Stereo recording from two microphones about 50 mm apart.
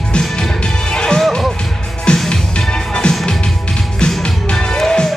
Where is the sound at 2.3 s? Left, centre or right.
Centre.